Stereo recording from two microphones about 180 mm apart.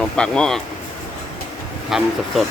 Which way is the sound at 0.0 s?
5° left (ahead or behind).